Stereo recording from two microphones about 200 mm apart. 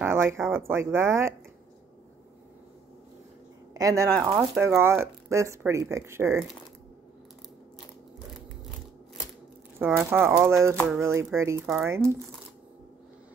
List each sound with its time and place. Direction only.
0.0 s speech: 10° right (ahead or behind)
3.7 s speech: 15° right (ahead or behind)
9.8 s speech: 10° right (ahead or behind)